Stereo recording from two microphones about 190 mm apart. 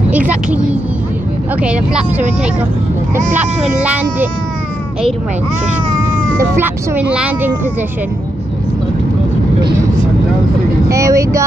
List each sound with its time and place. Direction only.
0.1 s speech: 5° right (ahead or behind)
6.3 s speech: 15° right (ahead or behind)
10.9 s speech: 15° right (ahead or behind)